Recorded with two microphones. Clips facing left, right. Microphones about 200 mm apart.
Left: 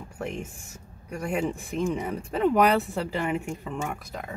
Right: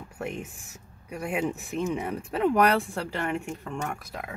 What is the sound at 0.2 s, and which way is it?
Speech, centre (ahead or behind).